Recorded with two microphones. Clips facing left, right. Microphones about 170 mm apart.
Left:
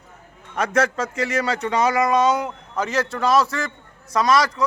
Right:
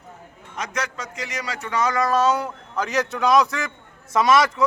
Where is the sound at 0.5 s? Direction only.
55° left (ahead or behind).